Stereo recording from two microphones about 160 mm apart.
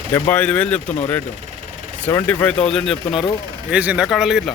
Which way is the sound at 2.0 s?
15° left (ahead or behind).